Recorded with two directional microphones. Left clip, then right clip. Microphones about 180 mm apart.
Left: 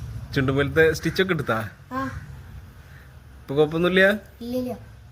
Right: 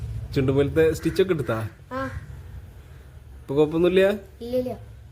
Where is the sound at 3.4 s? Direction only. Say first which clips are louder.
Right 1 dB; 25° right (ahead or behind).